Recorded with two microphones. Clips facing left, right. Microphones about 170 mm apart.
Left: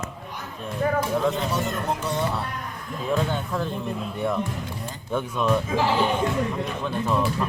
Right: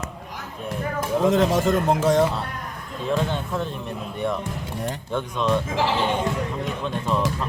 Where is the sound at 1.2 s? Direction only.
90° right.